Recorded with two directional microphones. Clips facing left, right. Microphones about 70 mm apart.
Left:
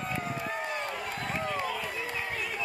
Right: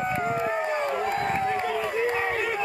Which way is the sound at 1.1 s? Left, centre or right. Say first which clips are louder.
Right 8 dB; right.